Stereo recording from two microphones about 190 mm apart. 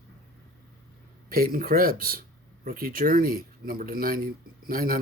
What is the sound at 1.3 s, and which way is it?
Speech, 50° right (ahead or behind).